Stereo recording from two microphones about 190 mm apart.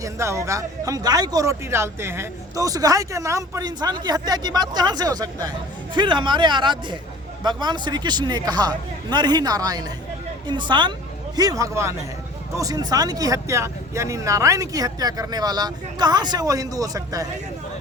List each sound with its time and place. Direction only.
0.0 s a man's voice: 15° right (ahead or behind)